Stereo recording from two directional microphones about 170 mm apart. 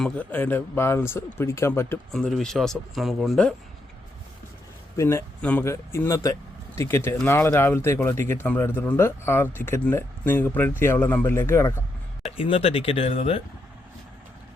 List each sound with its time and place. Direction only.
0.0 s a man's voice: 10° left (ahead or behind)
2.1 s speech: 5° left (ahead or behind)
4.9 s a man's voice: 15° left (ahead or behind)
12.4 s speech: 35° left (ahead or behind)